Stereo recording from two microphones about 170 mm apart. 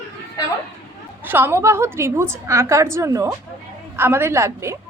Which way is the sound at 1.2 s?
15° right (ahead or behind).